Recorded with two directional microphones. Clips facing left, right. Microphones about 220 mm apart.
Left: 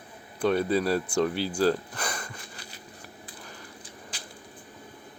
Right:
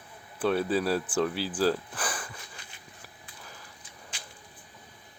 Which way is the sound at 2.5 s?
35° left (ahead or behind).